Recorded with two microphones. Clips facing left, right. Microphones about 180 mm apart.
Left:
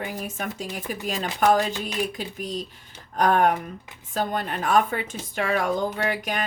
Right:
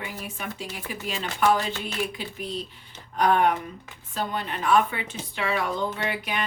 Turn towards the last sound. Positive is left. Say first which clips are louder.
# left 3 dB
turn(degrees=45)  # may be behind; listen again after turning